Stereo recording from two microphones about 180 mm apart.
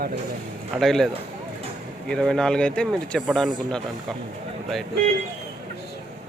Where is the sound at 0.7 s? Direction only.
Centre (ahead or behind).